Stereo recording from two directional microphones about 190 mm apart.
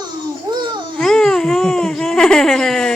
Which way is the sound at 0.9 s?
5° left (ahead or behind).